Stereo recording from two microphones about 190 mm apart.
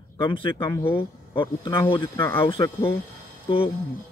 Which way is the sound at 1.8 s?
25° left (ahead or behind).